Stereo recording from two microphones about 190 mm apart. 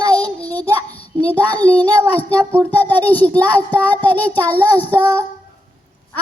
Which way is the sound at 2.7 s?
10° left (ahead or behind).